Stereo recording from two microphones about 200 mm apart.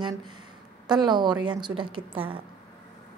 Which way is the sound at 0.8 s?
20° right (ahead or behind).